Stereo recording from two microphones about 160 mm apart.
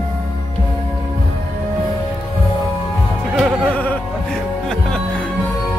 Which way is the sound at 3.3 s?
Centre (ahead or behind).